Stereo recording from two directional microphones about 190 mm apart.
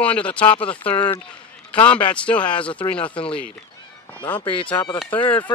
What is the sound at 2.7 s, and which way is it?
Speech, 25° left (ahead or behind).